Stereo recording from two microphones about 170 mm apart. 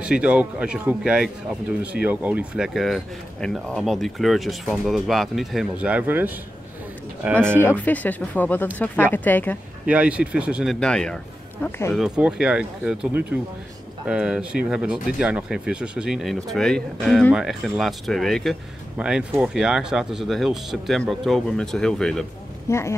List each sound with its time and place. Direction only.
0.0 s speech: 5° right (ahead or behind)
7.6 s speech: 10° left (ahead or behind)
9.8 s speech: 5° right (ahead or behind)
22.7 s speech: 15° left (ahead or behind)